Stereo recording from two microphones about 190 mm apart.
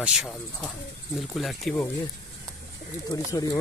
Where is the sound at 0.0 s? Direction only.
Centre (ahead or behind).